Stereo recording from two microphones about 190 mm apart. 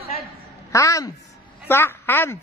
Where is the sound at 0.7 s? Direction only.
15° left (ahead or behind).